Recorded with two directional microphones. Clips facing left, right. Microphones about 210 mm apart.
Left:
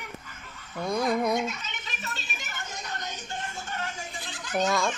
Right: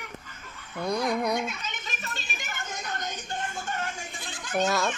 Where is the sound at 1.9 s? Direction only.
50° right (ahead or behind).